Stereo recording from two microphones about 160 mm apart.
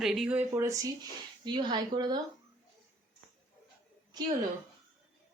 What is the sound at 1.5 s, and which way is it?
Speech, 30° right (ahead or behind).